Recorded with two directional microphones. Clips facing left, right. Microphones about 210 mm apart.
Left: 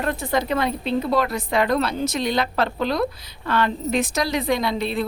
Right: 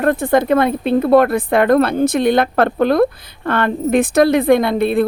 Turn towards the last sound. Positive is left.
turn(degrees=-55)  # may be behind; listen again after turning